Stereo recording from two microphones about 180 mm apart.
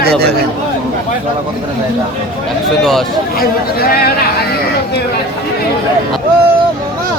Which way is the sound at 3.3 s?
55° left (ahead or behind).